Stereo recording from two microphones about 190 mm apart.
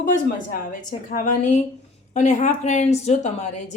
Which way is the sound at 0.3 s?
45° left (ahead or behind).